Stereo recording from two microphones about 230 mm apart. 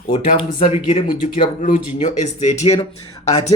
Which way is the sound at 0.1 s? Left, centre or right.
Left.